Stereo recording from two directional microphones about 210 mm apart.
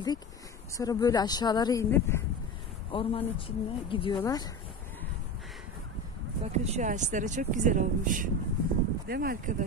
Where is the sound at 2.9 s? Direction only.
25° left (ahead or behind).